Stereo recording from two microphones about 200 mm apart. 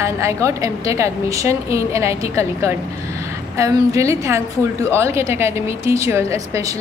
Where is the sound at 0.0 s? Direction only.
15° right (ahead or behind).